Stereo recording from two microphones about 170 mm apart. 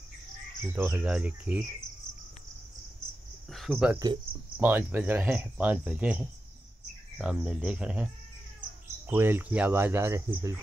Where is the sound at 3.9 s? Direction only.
25° right (ahead or behind).